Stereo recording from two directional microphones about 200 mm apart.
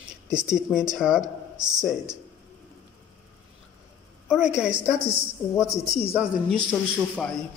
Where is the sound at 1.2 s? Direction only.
20° right (ahead or behind).